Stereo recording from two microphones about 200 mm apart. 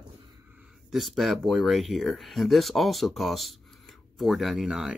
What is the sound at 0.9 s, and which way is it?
Speech, centre (ahead or behind).